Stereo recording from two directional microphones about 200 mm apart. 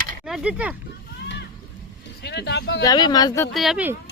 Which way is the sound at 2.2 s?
55° left (ahead or behind).